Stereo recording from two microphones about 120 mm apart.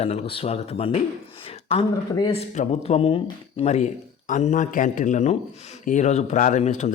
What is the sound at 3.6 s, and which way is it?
Speech, 75° left (ahead or behind).